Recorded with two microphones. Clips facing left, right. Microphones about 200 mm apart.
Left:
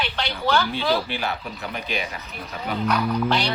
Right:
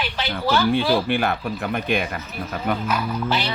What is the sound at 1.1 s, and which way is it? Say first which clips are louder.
Speech: right 7 dB; 55° right (ahead or behind).